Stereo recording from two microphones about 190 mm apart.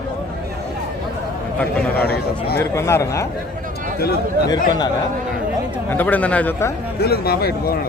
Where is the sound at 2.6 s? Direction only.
15° left (ahead or behind).